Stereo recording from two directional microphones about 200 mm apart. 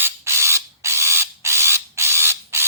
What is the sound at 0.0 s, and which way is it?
Mechanisms, 15° right (ahead or behind).